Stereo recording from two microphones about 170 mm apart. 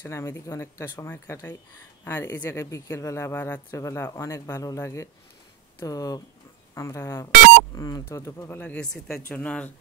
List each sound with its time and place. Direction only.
0.0 s speech: 15° left (ahead or behind)